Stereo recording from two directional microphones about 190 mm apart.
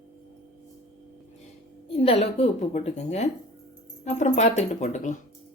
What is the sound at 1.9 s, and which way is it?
A woman's voice, 30° left (ahead or behind).